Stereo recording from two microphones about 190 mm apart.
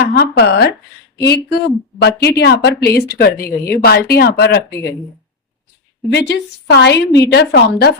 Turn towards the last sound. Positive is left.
turn(degrees=60)  # may be behind; listen again after turning